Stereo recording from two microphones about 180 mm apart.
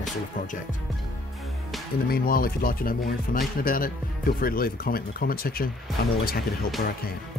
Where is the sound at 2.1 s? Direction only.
55° left (ahead or behind).